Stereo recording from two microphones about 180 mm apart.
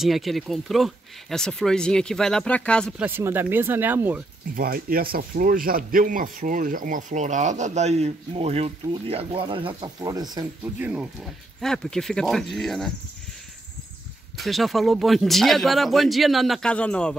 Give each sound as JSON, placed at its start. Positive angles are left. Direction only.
{"t": 0.0, "sound": "speech", "side_deg": 0}
{"t": 3.0, "sound": "speech", "side_deg": -10}
{"t": 4.6, "sound": "speech", "side_deg": -55}
{"t": 10.6, "sound": "speech", "side_deg": -10}
{"t": 11.6, "sound": "speech", "side_deg": 5}
{"t": 14.3, "sound": "speech", "side_deg": 0}